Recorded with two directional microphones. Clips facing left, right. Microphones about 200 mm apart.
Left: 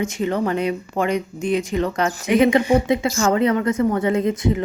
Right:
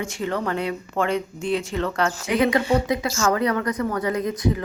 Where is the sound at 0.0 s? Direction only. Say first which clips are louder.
Left 5 dB; 20° left (ahead or behind).